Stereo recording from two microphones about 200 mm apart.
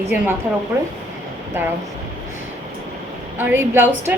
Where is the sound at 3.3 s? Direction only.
10° right (ahead or behind).